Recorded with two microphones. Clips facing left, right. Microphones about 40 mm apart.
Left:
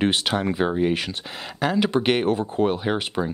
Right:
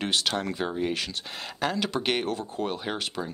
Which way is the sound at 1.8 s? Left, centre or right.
Centre.